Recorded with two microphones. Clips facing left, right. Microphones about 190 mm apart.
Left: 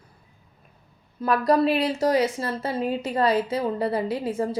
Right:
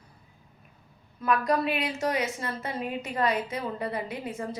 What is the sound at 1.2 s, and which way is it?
A woman's voice, 35° left (ahead or behind).